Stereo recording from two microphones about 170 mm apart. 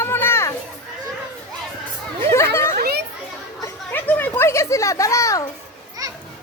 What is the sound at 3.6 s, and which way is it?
Children playing, 10° left (ahead or behind).